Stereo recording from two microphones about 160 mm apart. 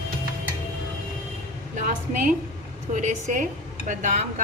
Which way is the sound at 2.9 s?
50° right (ahead or behind).